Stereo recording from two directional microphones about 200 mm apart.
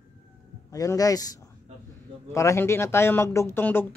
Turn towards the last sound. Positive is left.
turn(degrees=10)  # may be behind; listen again after turning